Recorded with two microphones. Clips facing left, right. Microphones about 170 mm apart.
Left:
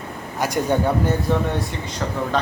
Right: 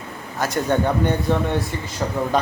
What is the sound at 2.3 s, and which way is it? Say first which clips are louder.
Speech: right 2 dB; 10° right (ahead or behind).